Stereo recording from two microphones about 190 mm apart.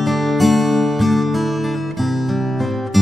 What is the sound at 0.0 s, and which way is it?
Music, centre (ahead or behind).